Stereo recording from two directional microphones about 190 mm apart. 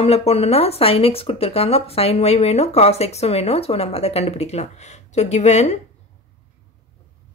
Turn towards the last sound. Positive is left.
turn(degrees=35)  # may be behind; listen again after turning